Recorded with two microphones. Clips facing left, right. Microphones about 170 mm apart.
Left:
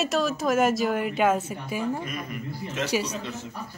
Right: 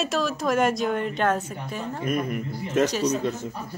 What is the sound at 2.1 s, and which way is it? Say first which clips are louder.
Speech: right 7 dB; 50° right (ahead or behind).